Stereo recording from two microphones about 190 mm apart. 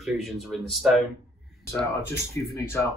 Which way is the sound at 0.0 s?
Centre (ahead or behind).